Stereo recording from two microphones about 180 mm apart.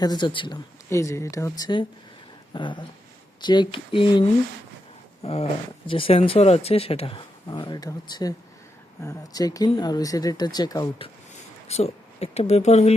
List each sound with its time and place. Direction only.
0.0 s speech: 25° left (ahead or behind)
5.2 s speech: 35° left (ahead or behind)
11.7 s speech: 35° left (ahead or behind)